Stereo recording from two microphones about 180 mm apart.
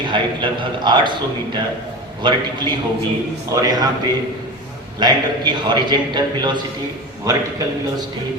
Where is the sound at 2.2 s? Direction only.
25° right (ahead or behind).